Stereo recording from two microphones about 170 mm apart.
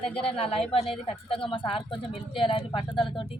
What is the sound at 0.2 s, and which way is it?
A woman's voice, 35° left (ahead or behind).